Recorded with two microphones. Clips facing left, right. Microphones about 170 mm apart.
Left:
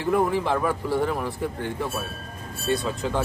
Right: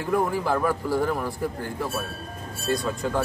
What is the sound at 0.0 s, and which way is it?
Speech, centre (ahead or behind).